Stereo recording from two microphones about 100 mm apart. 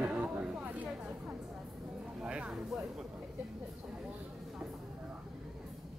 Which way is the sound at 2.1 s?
10° right (ahead or behind).